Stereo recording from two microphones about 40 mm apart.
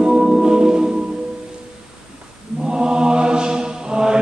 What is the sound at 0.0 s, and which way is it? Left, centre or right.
Gong, centre.